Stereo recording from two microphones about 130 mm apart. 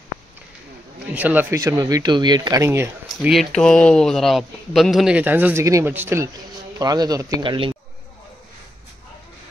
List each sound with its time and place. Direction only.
1.1 s speech: 15° right (ahead or behind)
1.6 s speech: 25° right (ahead or behind)
3.3 s speech: 5° left (ahead or behind); by 7.4 s 25° right (ahead or behind)
7.4 s speech: 40° right (ahead or behind)